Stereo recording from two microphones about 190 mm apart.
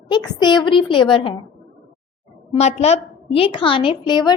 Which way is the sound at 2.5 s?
35° left (ahead or behind).